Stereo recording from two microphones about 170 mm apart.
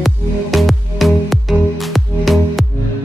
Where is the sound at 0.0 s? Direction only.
Centre (ahead or behind).